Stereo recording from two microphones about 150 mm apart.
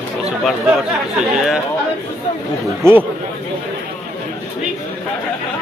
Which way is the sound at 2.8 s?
15° right (ahead or behind).